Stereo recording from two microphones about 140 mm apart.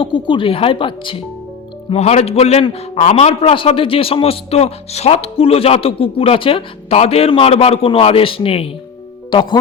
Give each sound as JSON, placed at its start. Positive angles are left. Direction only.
{"t": 0.0, "sound": "speech", "side_deg": 35}
{"t": 1.9, "sound": "a man's voice", "side_deg": 50}